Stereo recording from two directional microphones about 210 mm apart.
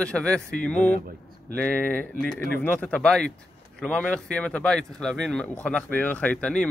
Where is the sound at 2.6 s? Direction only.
5° left (ahead or behind).